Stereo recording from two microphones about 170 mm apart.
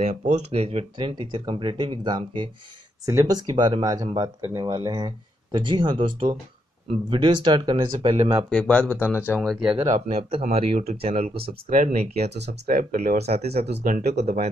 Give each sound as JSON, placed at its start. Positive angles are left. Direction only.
{"t": 0.0, "sound": "speech", "side_deg": -40}
{"t": 8.5, "sound": "speech", "side_deg": 5}
{"t": 9.9, "sound": "speech", "side_deg": -40}
{"t": 11.7, "sound": "speech", "side_deg": -50}
{"t": 12.3, "sound": "speech", "side_deg": -80}
{"t": 12.6, "sound": "speech", "side_deg": -55}
{"t": 13.2, "sound": "speech", "side_deg": -40}
{"t": 13.8, "sound": "speech", "side_deg": -55}